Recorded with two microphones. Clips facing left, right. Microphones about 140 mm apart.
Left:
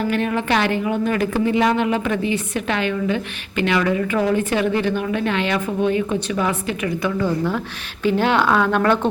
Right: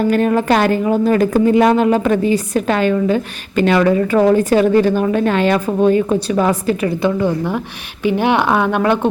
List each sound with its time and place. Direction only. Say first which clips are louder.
0.1 s a woman's voice: right 6 dB; 40° right (ahead or behind)
7.2 s speech: right 3 dB; 20° right (ahead or behind)